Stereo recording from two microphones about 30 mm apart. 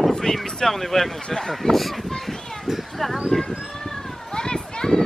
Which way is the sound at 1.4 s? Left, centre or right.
Centre.